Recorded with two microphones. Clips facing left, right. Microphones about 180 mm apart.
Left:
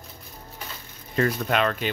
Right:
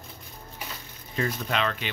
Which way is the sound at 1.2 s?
50° left (ahead or behind).